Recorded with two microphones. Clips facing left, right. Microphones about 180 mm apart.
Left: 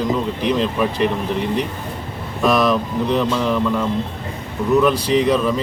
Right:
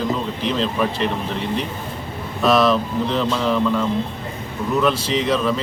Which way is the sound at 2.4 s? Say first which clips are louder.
Even; 15° left (ahead or behind).